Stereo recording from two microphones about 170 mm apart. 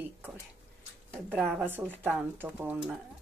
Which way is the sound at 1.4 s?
10° right (ahead or behind).